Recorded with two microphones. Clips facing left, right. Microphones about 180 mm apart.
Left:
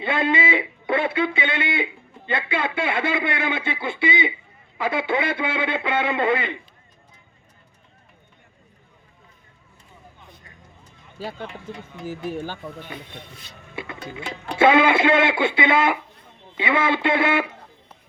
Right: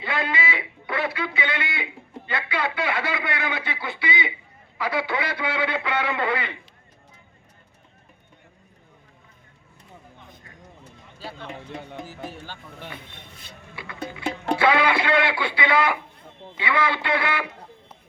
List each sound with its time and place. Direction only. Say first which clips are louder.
0.0 s a man's voice: left 5 dB; 25° left (ahead or behind)
12.0 s speech: left 8 dB; 50° left (ahead or behind)
13.7 s a man's voice: left 2 dB; 25° left (ahead or behind)